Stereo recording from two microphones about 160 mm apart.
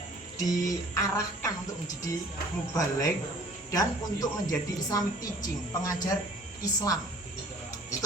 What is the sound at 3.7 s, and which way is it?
A woman's voice, 25° left (ahead or behind).